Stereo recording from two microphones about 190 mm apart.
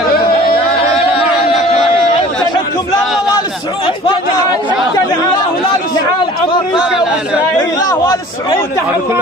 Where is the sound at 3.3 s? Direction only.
30° left (ahead or behind).